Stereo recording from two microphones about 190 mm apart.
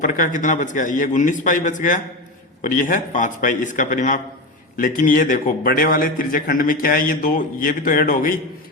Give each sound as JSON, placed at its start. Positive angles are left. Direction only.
{"t": 0.0, "sound": "a man's voice", "side_deg": 45}